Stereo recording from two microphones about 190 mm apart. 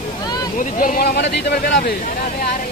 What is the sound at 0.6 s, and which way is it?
Speech, 45° left (ahead or behind).